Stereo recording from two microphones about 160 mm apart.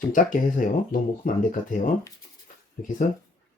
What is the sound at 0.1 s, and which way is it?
Speech, 55° left (ahead or behind).